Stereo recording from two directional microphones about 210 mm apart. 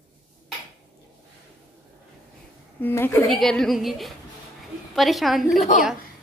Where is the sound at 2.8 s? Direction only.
10° left (ahead or behind).